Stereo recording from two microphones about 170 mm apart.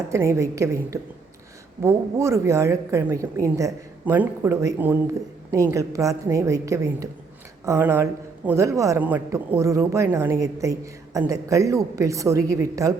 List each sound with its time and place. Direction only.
0.1 s a man's voice: 15° right (ahead or behind)